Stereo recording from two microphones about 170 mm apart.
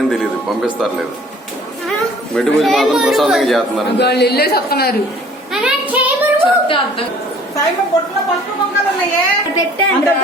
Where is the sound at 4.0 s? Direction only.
75° left (ahead or behind).